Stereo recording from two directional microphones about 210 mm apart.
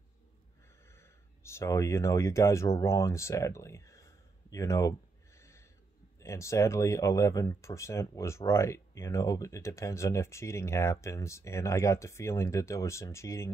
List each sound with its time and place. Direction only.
0.9 s speech: 15° left (ahead or behind)
6.1 s speech: 15° left (ahead or behind)